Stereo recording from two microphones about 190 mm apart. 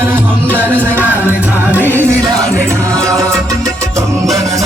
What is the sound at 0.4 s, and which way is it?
Music, 10° right (ahead or behind).